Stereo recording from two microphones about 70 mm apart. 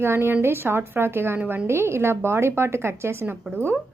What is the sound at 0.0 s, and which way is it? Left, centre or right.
A woman's voice, right.